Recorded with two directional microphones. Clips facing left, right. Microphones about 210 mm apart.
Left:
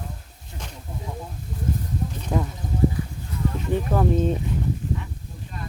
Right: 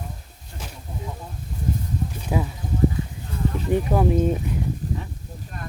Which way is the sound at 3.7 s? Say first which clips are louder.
Right 2 dB; 10° right (ahead or behind).